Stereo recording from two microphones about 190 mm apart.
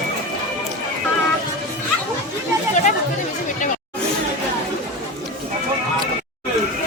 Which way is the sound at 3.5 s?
40° left (ahead or behind).